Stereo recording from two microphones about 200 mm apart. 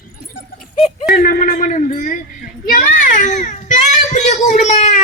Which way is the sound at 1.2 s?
45° left (ahead or behind).